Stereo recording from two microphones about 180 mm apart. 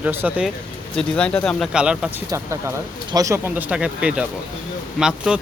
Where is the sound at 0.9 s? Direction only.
5° left (ahead or behind).